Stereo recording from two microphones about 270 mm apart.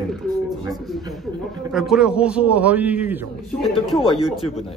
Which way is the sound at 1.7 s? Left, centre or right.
Centre.